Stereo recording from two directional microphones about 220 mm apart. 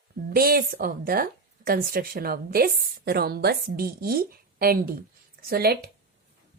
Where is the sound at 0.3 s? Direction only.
45° right (ahead or behind).